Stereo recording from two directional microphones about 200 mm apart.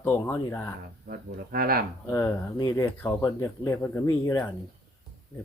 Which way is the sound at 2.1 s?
15° left (ahead or behind).